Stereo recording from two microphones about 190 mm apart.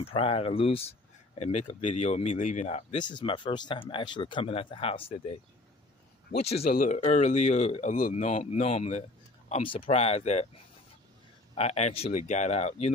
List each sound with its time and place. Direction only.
0.0 s speech: 30° left (ahead or behind)
6.4 s speech: 35° left (ahead or behind)
11.5 s speech: 35° left (ahead or behind)